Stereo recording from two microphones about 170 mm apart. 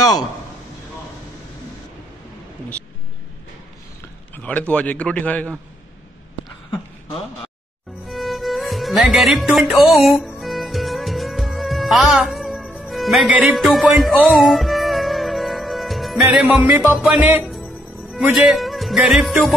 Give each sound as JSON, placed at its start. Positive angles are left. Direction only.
{"t": 4.4, "sound": "a man's voice", "side_deg": 10}
{"t": 8.1, "sound": "music", "side_deg": 0}